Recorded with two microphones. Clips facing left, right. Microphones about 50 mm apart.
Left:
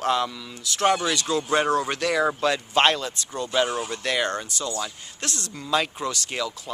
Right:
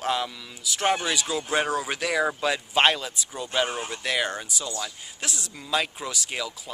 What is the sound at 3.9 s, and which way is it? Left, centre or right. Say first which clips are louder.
Speech: left 2 dB; centre.